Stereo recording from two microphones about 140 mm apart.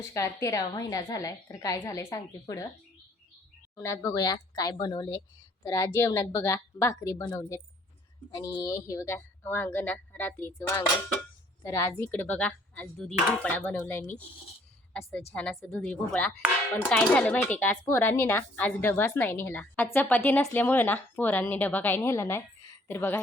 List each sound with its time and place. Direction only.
0.1 s a woman's voice: 20° left (ahead or behind)
3.8 s a woman's voice: 20° left (ahead or behind)
15.3 s speech: 5° left (ahead or behind)